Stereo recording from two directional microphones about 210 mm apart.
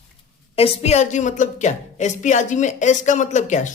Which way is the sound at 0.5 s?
30° left (ahead or behind).